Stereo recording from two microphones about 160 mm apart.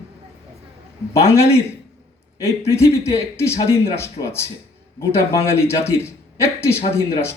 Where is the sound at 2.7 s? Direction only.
15° left (ahead or behind).